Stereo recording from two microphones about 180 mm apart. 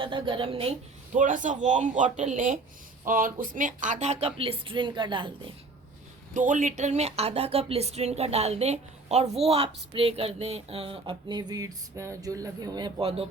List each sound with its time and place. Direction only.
0.0 s a woman's voice: 25° right (ahead or behind)
1.1 s speech: 45° right (ahead or behind); by 5.3 s 25° right (ahead or behind)
6.3 s speech: 45° right (ahead or behind)